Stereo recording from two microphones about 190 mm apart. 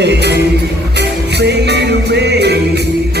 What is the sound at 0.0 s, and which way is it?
Music, 60° right (ahead or behind).